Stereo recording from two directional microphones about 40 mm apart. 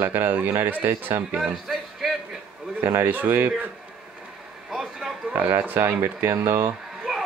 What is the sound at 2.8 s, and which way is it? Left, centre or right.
Speech, right.